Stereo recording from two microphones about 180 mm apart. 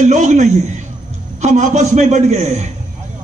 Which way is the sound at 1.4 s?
45° right (ahead or behind).